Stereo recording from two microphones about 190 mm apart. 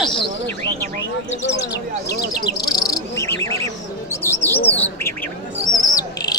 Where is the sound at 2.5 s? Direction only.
20° left (ahead or behind).